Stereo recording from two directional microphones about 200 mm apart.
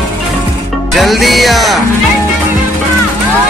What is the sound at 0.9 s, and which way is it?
Music, centre (ahead or behind).